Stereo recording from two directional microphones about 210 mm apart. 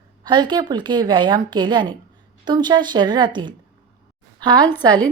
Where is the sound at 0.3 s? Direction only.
20° right (ahead or behind).